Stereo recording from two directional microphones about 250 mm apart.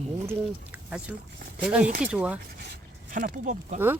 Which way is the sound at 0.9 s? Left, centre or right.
Centre.